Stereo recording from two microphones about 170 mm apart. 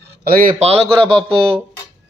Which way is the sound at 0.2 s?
55° right (ahead or behind).